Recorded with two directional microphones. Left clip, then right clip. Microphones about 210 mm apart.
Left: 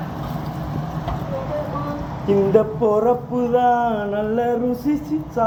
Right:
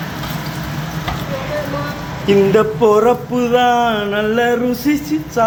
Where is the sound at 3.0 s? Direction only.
5° right (ahead or behind).